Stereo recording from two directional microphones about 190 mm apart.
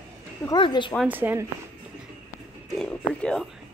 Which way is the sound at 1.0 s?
10° right (ahead or behind).